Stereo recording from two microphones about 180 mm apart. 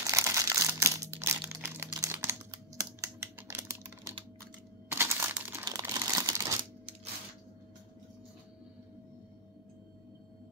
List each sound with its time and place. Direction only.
0.0 s crumpling: 15° right (ahead or behind)